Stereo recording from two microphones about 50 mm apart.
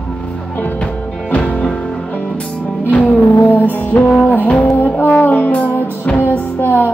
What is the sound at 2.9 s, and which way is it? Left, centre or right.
Music, left.